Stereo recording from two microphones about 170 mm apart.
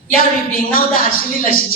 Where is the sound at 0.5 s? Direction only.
55° left (ahead or behind).